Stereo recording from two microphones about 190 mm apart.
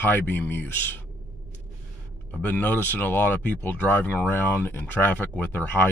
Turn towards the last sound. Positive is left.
turn(degrees=10)  # may be behind; listen again after turning